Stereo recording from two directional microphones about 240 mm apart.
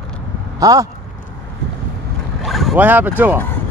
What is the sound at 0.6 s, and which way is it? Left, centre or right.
Speech, centre.